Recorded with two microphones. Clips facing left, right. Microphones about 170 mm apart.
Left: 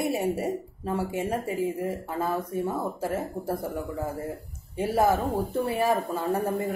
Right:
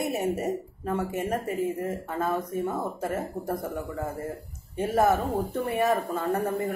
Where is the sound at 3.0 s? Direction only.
10° left (ahead or behind).